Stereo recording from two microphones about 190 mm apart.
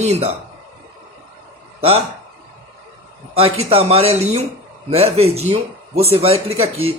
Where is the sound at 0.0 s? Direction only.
35° right (ahead or behind).